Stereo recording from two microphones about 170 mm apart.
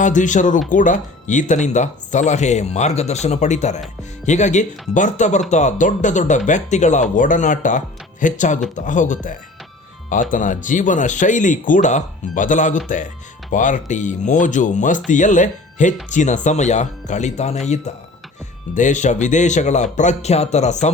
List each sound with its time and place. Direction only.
0.0 s speech: 45° left (ahead or behind)
18.7 s speech: 45° left (ahead or behind)